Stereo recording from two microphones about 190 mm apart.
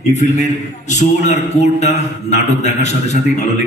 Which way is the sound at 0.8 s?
40° left (ahead or behind).